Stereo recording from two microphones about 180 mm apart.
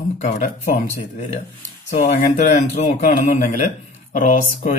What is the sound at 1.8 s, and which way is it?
A man's voice, 40° left (ahead or behind).